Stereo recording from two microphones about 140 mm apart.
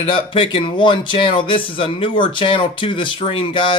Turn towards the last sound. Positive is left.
turn(degrees=35)  # may be behind; listen again after turning